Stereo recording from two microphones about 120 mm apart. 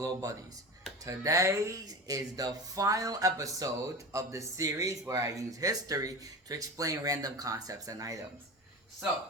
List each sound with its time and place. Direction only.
0.0 s speech: 30° right (ahead or behind)